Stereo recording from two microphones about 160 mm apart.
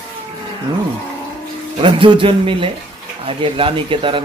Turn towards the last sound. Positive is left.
turn(degrees=-30)  # may be behind; listen again after turning